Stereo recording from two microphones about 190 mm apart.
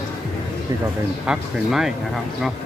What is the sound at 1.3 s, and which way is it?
Speech, centre (ahead or behind).